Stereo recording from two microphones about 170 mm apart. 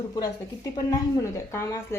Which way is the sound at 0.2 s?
20° left (ahead or behind).